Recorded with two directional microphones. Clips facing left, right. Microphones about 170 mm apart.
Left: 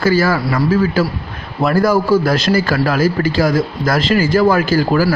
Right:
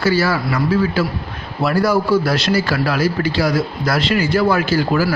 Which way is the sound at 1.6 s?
50° left (ahead or behind).